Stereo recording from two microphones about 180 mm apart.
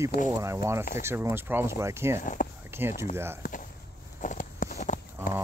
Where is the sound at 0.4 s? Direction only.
15° right (ahead or behind).